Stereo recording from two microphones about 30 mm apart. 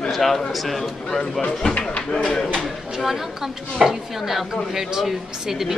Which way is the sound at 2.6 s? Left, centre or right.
Centre.